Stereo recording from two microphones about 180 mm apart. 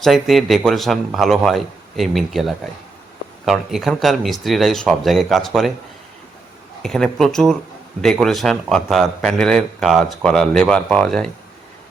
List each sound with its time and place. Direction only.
0.0 s a man's voice: centre (ahead or behind)
6.8 s a man's voice: centre (ahead or behind)